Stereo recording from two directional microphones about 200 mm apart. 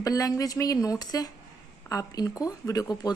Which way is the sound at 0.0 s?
20° left (ahead or behind).